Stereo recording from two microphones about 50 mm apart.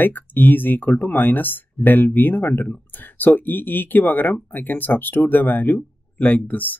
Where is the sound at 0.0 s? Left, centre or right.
Left.